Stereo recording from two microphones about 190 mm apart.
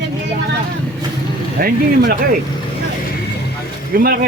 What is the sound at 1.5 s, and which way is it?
Speech, 50° right (ahead or behind).